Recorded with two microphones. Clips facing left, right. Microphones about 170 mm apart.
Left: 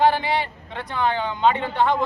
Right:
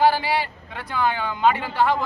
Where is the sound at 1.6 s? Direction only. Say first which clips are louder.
Even; 5° right (ahead or behind).